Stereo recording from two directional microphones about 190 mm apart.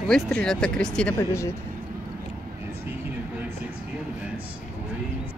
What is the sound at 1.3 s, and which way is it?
Speech, 15° left (ahead or behind).